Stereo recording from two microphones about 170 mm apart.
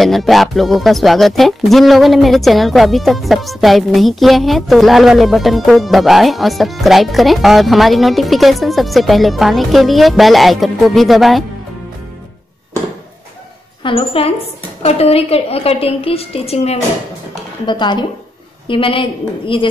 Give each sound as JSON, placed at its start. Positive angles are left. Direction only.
{"t": 0.0, "sound": "speech", "side_deg": 0}
{"t": 13.8, "sound": "a woman's voice", "side_deg": 35}
{"t": 17.6, "sound": "a woman's voice", "side_deg": 25}